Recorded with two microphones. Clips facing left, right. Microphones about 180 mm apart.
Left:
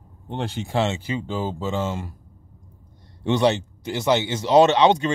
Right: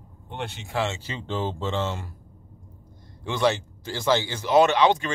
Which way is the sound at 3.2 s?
25° left (ahead or behind).